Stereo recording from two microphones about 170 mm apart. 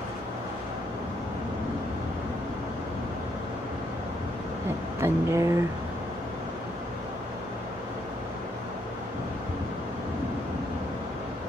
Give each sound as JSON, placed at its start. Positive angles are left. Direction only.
{"t": 5.0, "sound": "speech", "side_deg": -15}